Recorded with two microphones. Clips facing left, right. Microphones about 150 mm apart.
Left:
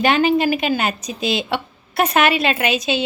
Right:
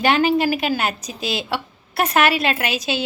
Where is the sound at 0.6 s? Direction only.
5° right (ahead or behind).